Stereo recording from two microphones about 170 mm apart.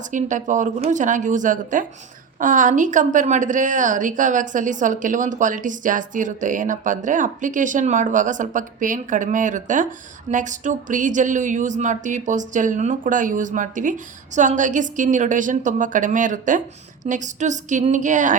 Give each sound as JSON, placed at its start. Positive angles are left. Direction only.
{"t": 0.1, "sound": "speech", "side_deg": -45}